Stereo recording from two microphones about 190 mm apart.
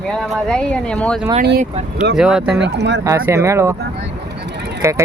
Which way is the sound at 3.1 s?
15° right (ahead or behind).